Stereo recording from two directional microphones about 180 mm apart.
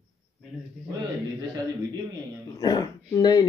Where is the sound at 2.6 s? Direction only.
20° left (ahead or behind).